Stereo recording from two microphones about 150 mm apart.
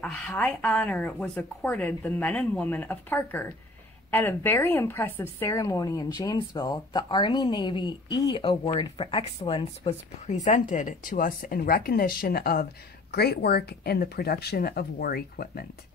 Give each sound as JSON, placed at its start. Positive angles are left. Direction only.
{"t": 0.0, "sound": "a woman's voice", "side_deg": 5}